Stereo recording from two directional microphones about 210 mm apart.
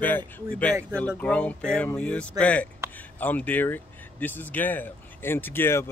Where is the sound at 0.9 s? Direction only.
5° left (ahead or behind).